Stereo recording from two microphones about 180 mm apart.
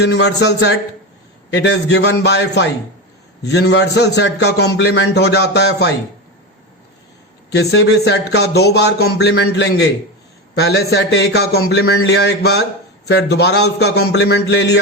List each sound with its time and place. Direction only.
0.0 s a man's voice: 70° left (ahead or behind)
7.5 s a man's voice: 70° left (ahead or behind)